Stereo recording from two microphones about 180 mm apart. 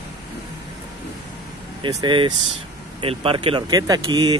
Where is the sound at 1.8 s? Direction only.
25° right (ahead or behind).